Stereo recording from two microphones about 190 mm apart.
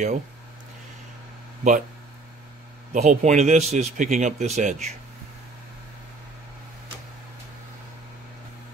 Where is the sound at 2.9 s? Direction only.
40° right (ahead or behind).